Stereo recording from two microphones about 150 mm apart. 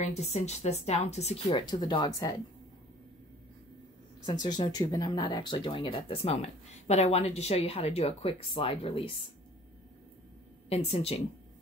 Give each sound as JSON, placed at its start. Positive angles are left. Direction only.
{"t": 0.0, "sound": "speech", "side_deg": 45}
{"t": 1.7, "sound": "speech", "side_deg": 30}
{"t": 4.3, "sound": "speech", "side_deg": 25}
{"t": 10.7, "sound": "speech", "side_deg": 45}